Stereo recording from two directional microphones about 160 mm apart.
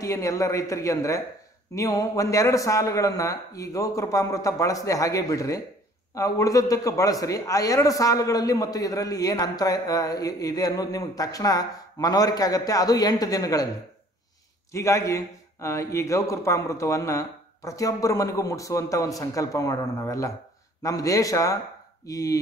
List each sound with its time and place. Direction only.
0.0 s a man's voice: 20° left (ahead or behind)
14.7 s a man's voice: 20° left (ahead or behind)